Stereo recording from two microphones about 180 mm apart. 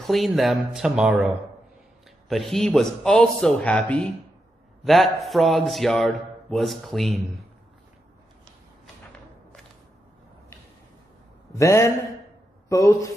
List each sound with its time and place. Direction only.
0.0 s a man's voice: centre (ahead or behind)
11.5 s a man's voice: 15° left (ahead or behind)